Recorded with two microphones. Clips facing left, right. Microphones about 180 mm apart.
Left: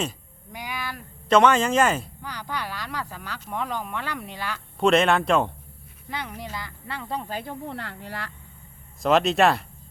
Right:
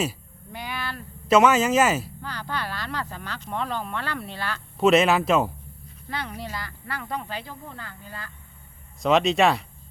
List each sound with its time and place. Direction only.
0.5 s a sound: 10° left (ahead or behind)
1.3 s speech: 5° right (ahead or behind)
2.2 s speech: 15° left (ahead or behind)
4.8 s speech: 5° right (ahead or behind)
6.1 s speech: 15° left (ahead or behind)
7.3 s speech: 45° left (ahead or behind)
7.6 s speech: 70° left (ahead or behind)
9.0 s speech: centre (ahead or behind)